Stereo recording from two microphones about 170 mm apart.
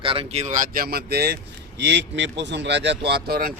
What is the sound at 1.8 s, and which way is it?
Speech, 85° right.